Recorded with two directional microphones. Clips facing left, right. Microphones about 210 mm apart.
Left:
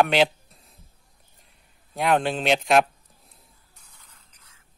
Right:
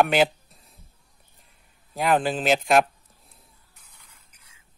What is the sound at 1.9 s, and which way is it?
Speech, centre (ahead or behind).